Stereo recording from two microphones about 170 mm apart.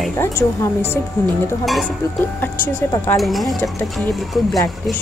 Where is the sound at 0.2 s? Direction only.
15° left (ahead or behind).